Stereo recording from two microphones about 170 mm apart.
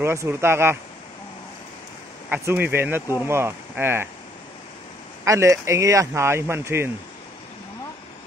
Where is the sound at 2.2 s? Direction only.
10° right (ahead or behind).